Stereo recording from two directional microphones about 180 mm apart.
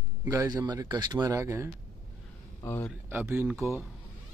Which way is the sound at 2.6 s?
15° left (ahead or behind).